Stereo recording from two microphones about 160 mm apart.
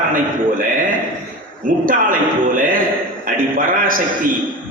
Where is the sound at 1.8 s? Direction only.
60° right (ahead or behind).